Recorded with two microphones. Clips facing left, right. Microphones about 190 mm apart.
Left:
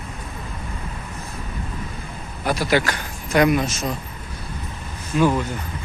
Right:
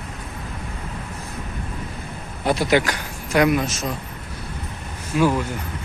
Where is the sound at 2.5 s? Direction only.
20° right (ahead or behind); by 3.8 s centre (ahead or behind).